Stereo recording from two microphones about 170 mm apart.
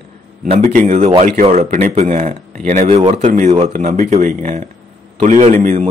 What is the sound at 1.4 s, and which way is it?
Speech, 45° right (ahead or behind).